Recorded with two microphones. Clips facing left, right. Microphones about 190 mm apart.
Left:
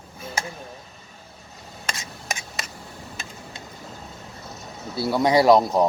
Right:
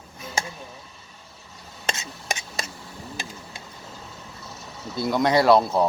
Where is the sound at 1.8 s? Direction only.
25° right (ahead or behind).